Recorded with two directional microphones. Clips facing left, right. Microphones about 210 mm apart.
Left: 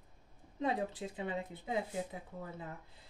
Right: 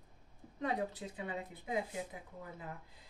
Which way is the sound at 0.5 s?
25° left (ahead or behind).